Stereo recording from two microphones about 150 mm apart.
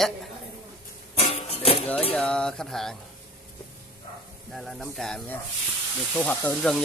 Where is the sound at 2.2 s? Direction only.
5° left (ahead or behind).